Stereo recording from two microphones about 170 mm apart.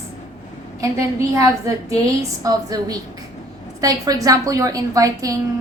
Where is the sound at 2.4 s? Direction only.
20° right (ahead or behind).